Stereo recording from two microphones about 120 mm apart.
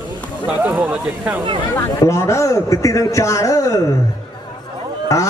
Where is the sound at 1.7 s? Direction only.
25° left (ahead or behind).